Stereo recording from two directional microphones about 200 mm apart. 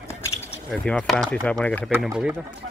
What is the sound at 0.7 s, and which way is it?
Speech, 5° left (ahead or behind).